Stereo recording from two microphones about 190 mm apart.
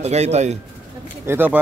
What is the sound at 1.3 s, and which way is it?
Speech, 10° right (ahead or behind).